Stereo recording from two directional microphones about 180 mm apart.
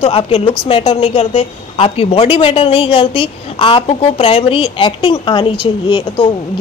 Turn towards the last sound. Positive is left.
turn(degrees=25)  # may be behind; listen again after turning